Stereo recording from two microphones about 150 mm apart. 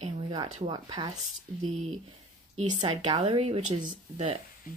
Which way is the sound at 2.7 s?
30° right (ahead or behind).